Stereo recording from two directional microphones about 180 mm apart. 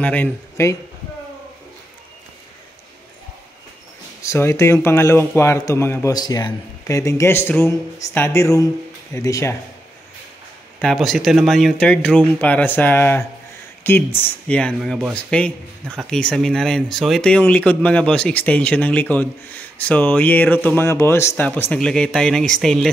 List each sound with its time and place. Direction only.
0.0 s speech: 10° left (ahead or behind)
4.2 s speech: 15° left (ahead or behind)
10.8 s speech: centre (ahead or behind)